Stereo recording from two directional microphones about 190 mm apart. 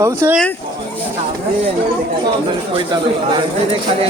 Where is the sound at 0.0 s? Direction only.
15° right (ahead or behind).